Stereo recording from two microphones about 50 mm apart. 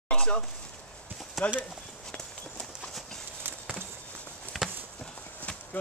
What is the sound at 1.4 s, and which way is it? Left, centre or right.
Speech, centre.